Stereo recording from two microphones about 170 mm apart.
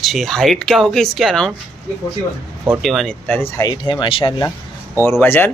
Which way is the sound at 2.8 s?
Centre (ahead or behind).